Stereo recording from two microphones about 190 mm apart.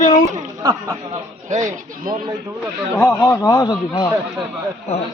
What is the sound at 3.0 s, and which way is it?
Speech, 5° left (ahead or behind).